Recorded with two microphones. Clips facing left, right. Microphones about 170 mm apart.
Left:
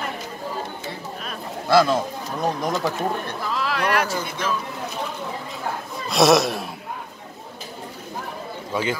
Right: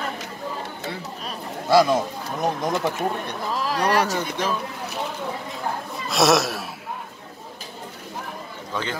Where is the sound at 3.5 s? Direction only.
40° right (ahead or behind).